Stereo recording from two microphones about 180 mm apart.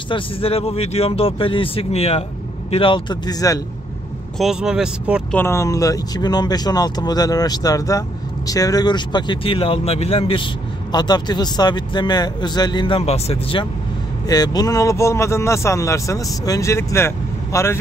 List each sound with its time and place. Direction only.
0.1 s speech: 30° left (ahead or behind)
4.4 s speech: 5° right (ahead or behind)
5.3 s speech: 15° left (ahead or behind); by 13.7 s 30° left (ahead or behind)
14.2 s speech: 20° left (ahead or behind)